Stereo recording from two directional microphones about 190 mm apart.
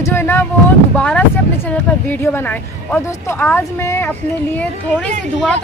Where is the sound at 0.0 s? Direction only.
15° left (ahead or behind).